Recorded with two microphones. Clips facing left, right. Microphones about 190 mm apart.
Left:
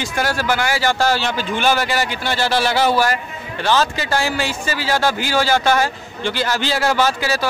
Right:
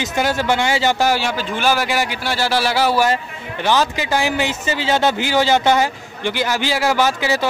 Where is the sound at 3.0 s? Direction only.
20° right (ahead or behind).